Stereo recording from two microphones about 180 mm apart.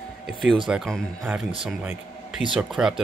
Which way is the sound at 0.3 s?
Centre (ahead or behind).